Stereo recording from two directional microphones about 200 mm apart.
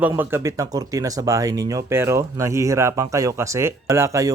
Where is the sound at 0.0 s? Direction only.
10° right (ahead or behind).